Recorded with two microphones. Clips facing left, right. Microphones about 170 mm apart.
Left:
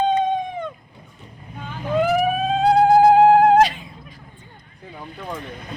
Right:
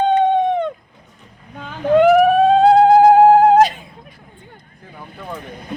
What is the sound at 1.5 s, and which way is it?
Vehicle, 80° right.